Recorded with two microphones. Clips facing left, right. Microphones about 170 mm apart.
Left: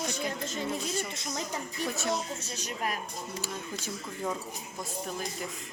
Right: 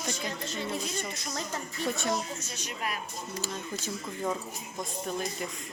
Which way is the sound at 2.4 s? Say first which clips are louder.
Left 2 dB; 40° left (ahead or behind).